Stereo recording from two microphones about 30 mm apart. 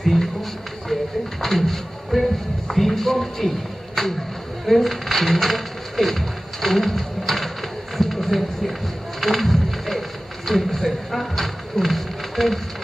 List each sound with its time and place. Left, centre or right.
0.0 s speech: centre
1.4 s speech: centre
8.0 s a sound: centre